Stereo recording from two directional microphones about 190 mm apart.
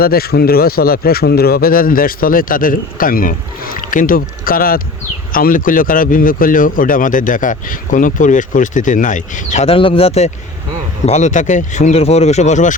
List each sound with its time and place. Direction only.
0.0 s speech: 55° left (ahead or behind)